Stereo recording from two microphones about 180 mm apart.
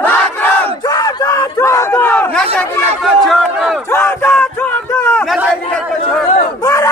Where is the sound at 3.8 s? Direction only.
15° left (ahead or behind); by 5.6 s 5° right (ahead or behind).